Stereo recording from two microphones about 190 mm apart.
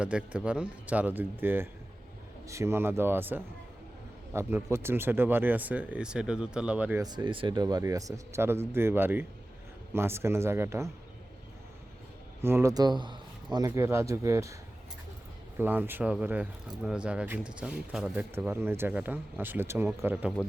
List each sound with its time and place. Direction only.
0.0 s speech: 5° right (ahead or behind)
7.0 s speech: 20° right (ahead or behind)
12.4 s speech: 15° right (ahead or behind)
15.5 s speech: 10° right (ahead or behind)